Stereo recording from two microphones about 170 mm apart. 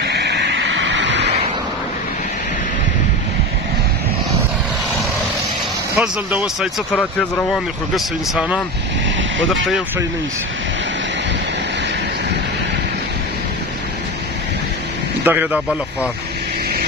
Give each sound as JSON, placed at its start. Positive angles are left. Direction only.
{"t": 0.0, "sound": "vehicle", "side_deg": -80}
{"t": 5.9, "sound": "speech", "side_deg": -5}
{"t": 15.2, "sound": "speech", "side_deg": -10}